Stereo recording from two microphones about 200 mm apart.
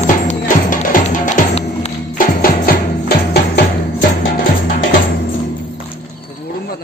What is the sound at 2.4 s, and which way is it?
Music, 50° left (ahead or behind).